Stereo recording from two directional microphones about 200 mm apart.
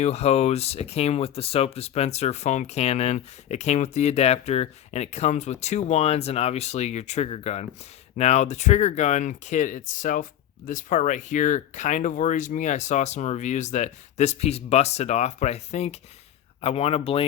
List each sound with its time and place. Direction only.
0.0 s speech: 30° left (ahead or behind)